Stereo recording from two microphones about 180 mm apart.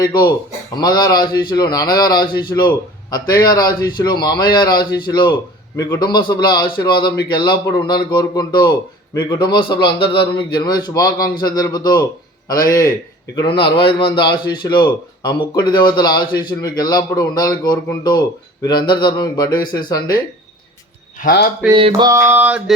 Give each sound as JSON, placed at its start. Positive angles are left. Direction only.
{"t": 0.0, "sound": "a man's voice", "side_deg": 25}
{"t": 21.2, "sound": "a man's voice", "side_deg": 55}
{"t": 21.7, "sound": "mantra", "side_deg": -25}